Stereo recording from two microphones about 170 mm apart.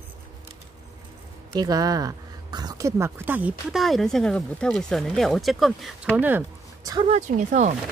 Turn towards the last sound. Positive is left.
turn(degrees=-45)  # may be behind; listen again after turning